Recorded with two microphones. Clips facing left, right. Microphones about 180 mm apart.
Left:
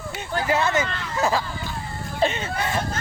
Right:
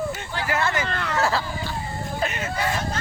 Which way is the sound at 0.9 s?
65° right (ahead or behind).